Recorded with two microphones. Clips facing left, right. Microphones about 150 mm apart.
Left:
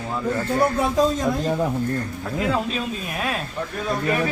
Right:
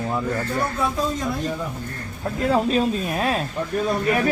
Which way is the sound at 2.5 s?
40° right (ahead or behind).